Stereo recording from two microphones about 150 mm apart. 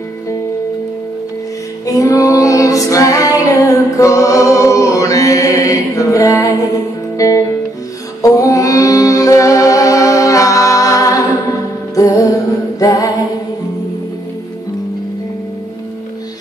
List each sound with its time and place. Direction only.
2.0 s female singing: 20° left (ahead or behind)
7.2 s music: 20° left (ahead or behind)